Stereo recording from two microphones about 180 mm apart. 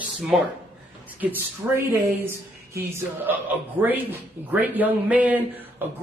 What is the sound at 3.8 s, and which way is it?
Speech, 10° right (ahead or behind).